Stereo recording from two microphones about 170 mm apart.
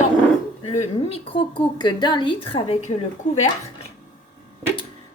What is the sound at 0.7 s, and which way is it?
A woman's voice, 35° left (ahead or behind).